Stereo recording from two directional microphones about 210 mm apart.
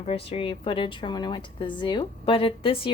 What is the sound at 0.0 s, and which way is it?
A woman's voice, 30° left (ahead or behind).